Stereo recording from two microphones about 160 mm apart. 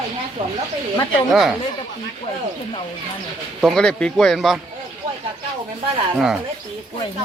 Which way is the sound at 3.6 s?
Centre (ahead or behind).